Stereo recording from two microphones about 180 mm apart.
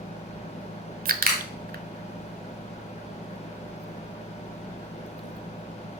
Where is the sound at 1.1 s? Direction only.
55° right (ahead or behind).